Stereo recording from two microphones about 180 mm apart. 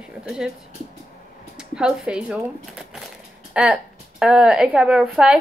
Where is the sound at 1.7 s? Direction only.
5° right (ahead or behind).